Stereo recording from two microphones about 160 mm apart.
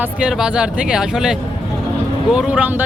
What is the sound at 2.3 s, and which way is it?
Speech, 10° right (ahead or behind).